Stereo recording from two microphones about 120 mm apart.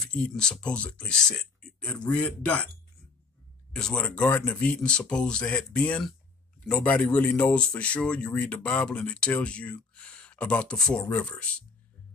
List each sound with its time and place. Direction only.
0.0 s speech: 10° left (ahead or behind)
3.7 s speech: 10° left (ahead or behind)